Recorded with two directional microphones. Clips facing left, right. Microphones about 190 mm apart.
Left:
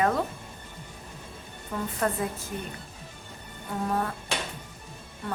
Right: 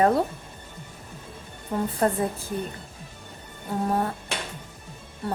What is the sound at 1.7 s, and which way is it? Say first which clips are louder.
Speech: right 6 dB; 30° right (ahead or behind).